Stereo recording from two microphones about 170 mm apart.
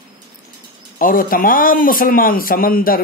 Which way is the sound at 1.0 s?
55° left (ahead or behind).